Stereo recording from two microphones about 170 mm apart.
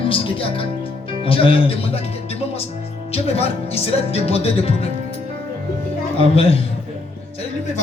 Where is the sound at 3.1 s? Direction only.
35° left (ahead or behind).